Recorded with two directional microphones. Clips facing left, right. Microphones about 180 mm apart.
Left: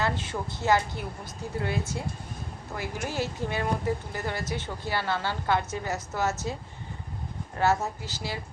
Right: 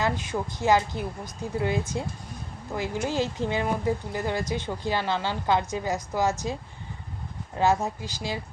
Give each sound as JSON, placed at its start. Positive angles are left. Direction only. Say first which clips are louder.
{"t": 0.0, "sound": "a woman's voice", "louder": "right 2 dB", "side_deg": -15}
{"t": 7.6, "sound": "a woman's voice", "louder": "right 2 dB", "side_deg": -15}